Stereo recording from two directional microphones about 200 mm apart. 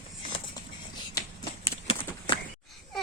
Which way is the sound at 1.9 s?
25° left (ahead or behind).